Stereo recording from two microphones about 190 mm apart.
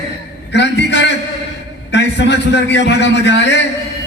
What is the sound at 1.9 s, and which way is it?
A man's voice, 65° left (ahead or behind).